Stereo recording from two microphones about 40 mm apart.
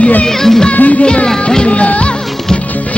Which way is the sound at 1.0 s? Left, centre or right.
Left.